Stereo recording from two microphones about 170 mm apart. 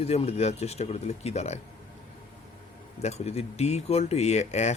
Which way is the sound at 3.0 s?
40° left (ahead or behind).